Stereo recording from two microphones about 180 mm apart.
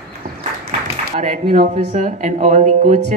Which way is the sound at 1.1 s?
40° right (ahead or behind).